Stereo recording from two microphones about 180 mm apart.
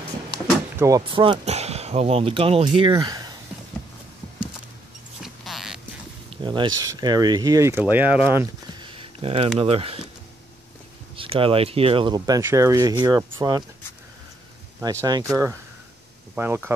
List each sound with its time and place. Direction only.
0.7 s speech: 20° right (ahead or behind)
1.1 s speech: 30° right (ahead or behind)
5.2 s a sound: centre (ahead or behind)
6.3 s speech: 25° right (ahead or behind); by 8.5 s 10° right (ahead or behind)
8.7 s a sound: 30° right (ahead or behind)
9.6 s speech: 30° right (ahead or behind)
11.1 s speech: 30° right (ahead or behind)
14.8 s speech: 20° right (ahead or behind)